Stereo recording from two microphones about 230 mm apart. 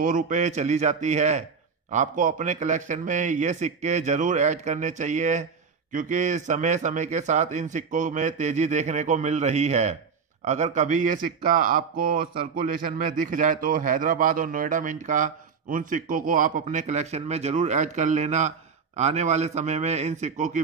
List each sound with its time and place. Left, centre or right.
0.0 s a man's voice: right